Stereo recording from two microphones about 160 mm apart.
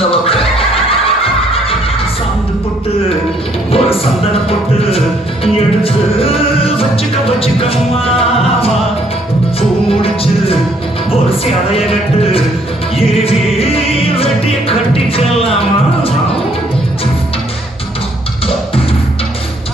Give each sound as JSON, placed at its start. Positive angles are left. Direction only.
{"t": 0.1, "sound": "music", "side_deg": 35}
{"t": 3.7, "sound": "music", "side_deg": 35}